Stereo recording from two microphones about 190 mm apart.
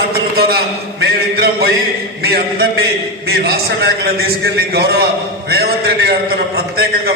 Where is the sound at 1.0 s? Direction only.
55° right (ahead or behind).